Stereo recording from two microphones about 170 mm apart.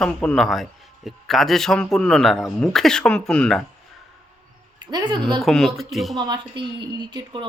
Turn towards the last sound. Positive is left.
turn(degrees=-25)  # may be behind; listen again after turning